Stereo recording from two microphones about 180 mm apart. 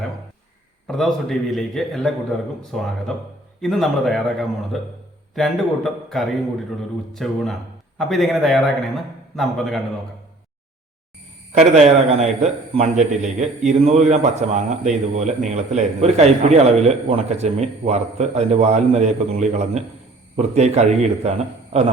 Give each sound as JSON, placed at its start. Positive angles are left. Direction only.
{"t": 0.9, "sound": "a man's voice", "side_deg": 0}
{"t": 11.5, "sound": "a man's voice", "side_deg": -40}